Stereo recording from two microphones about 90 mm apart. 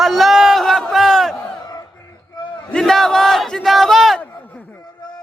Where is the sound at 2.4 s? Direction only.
55° left (ahead or behind).